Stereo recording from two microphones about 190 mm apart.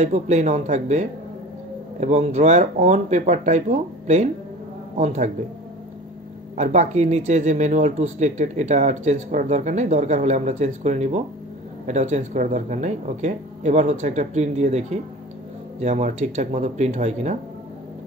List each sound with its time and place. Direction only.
0.0 s speech: 35° right (ahead or behind)
6.5 s speech: 35° right (ahead or behind)